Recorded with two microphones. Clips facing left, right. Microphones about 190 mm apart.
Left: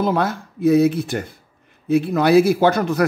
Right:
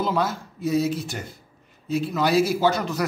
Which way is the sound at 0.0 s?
55° left (ahead or behind).